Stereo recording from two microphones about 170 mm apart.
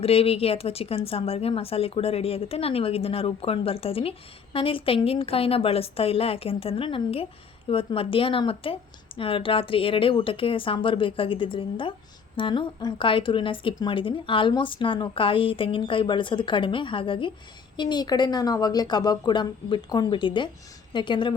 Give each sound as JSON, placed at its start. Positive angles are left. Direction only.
{"t": 0.0, "sound": "speech", "side_deg": 35}